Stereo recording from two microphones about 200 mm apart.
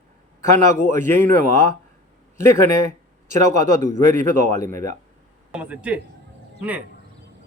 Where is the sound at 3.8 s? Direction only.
40° right (ahead or behind).